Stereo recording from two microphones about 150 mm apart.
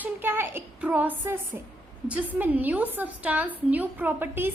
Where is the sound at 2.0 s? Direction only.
10° right (ahead or behind).